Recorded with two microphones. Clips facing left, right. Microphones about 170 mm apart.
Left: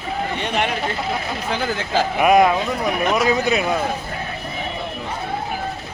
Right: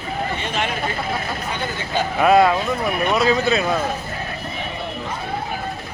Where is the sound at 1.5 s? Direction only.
90° left.